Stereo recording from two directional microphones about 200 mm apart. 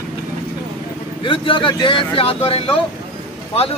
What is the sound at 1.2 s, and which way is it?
A man's voice, 25° left (ahead or behind).